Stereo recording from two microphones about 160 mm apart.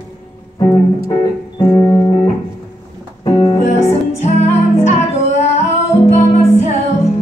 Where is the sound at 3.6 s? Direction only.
45° left (ahead or behind).